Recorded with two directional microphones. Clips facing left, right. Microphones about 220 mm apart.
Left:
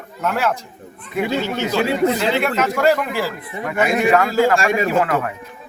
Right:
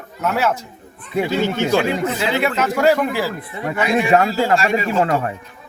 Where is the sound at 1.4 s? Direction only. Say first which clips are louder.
Right 4 dB; 50° right (ahead or behind).